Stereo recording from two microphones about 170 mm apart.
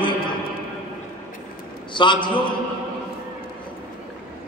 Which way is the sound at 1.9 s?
30° left (ahead or behind).